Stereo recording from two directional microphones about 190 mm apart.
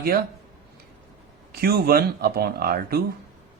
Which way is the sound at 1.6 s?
55° right (ahead or behind).